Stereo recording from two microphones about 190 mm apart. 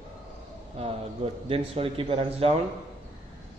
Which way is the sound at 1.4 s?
30° right (ahead or behind).